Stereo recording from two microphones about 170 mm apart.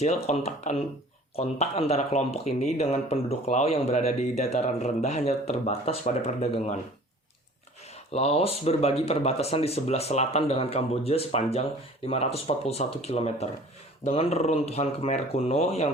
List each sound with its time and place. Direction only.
0.0 s speech: 40° left (ahead or behind)
8.1 s speech: 35° left (ahead or behind)